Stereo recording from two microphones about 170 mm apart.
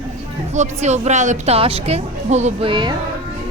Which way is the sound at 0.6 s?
40° right (ahead or behind).